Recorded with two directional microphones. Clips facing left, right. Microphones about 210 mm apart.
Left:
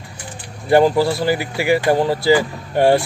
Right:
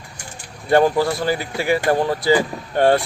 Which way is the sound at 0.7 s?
15° left (ahead or behind).